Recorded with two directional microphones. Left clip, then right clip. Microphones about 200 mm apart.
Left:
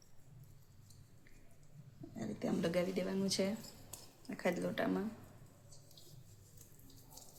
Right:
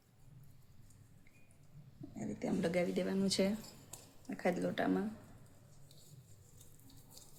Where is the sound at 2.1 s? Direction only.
10° right (ahead or behind).